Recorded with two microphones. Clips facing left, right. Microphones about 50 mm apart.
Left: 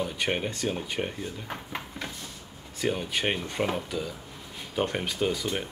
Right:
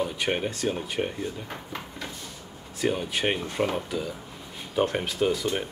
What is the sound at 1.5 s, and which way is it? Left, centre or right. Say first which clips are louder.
Drawer open or close: left 1 dB; centre.